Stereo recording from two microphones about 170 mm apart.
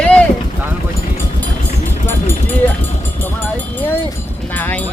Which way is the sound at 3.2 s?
10° left (ahead or behind).